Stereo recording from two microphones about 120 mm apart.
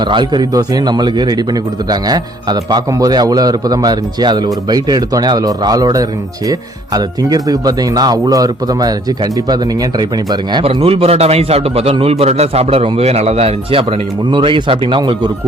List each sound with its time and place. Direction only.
0.0 s a man's voice: 40° right (ahead or behind)
10.6 s a man's voice: 55° right (ahead or behind)